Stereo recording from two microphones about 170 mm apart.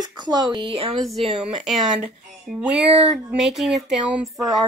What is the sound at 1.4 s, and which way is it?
Speech, 5° right (ahead or behind).